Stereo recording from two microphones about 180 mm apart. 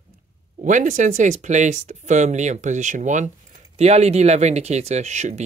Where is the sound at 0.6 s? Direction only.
45° right (ahead or behind).